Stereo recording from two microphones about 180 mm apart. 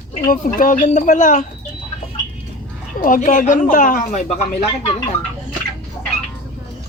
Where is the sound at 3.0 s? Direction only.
45° left (ahead or behind).